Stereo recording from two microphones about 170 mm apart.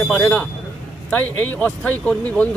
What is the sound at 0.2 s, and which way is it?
Speech, 10° left (ahead or behind).